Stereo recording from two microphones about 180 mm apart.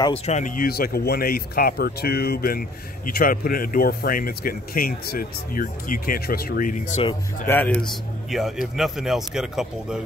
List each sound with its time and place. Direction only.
0.3 s speech: 45° left (ahead or behind)
7.4 s a man's voice: 10° left (ahead or behind)